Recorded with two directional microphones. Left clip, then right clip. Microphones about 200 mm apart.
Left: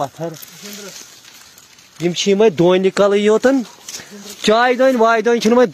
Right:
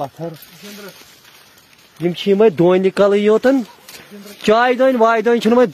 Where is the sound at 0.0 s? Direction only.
15° left (ahead or behind).